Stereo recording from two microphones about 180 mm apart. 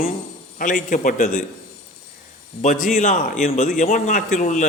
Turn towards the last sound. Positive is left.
turn(degrees=45)  # may be behind; listen again after turning